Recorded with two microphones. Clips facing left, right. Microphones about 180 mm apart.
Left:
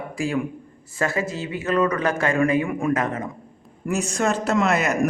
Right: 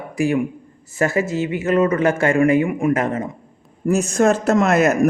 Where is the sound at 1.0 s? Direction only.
25° right (ahead or behind).